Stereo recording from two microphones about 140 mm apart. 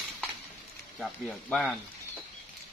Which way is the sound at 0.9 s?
5° left (ahead or behind).